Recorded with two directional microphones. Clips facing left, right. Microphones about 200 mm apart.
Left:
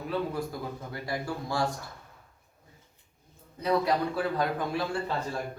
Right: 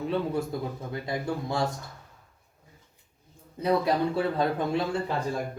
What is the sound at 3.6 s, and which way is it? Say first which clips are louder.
A man's voice: right 2 dB; 25° right (ahead or behind).